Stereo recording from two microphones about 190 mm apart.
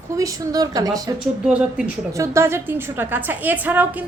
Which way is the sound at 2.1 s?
15° right (ahead or behind).